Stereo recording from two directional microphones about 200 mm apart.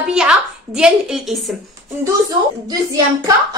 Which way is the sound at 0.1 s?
5° right (ahead or behind).